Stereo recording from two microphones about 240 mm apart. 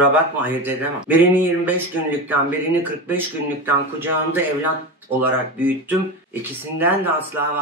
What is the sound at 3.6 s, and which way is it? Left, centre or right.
Speech, centre.